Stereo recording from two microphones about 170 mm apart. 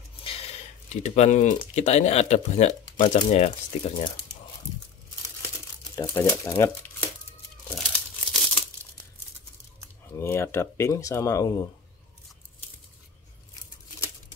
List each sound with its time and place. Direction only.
0.2 s speech: 35° left (ahead or behind)
5.9 s speech: 20° left (ahead or behind)
7.7 s crumpling: centre (ahead or behind)
10.1 s speech: 15° left (ahead or behind)